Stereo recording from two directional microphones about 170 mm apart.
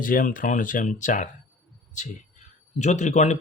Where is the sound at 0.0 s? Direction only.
55° left (ahead or behind).